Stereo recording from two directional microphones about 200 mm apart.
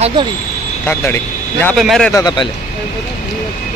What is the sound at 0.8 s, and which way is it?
Speech, 10° left (ahead or behind).